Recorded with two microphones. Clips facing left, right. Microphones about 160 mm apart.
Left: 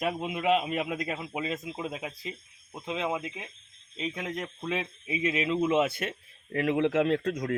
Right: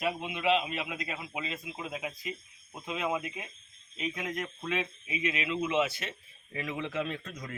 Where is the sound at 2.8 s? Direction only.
25° left (ahead or behind).